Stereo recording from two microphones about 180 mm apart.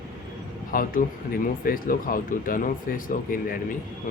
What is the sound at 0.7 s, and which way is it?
Speech, 50° left (ahead or behind).